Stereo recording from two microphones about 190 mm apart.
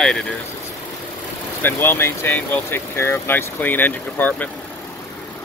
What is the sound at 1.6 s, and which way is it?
Speech, 10° left (ahead or behind).